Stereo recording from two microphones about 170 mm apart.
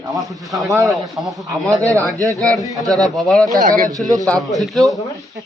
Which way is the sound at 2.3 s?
20° right (ahead or behind).